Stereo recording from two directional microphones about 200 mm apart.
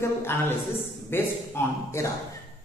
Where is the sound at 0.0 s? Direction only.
10° left (ahead or behind).